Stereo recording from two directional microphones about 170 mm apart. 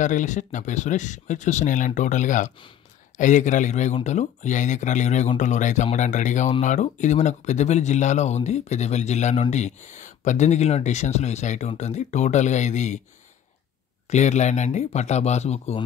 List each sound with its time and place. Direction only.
0.0 s speech: 45° left (ahead or behind)
14.1 s speech: 45° left (ahead or behind)